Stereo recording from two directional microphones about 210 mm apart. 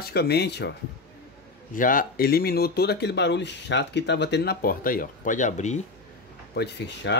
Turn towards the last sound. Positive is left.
turn(degrees=55)  # may be behind; listen again after turning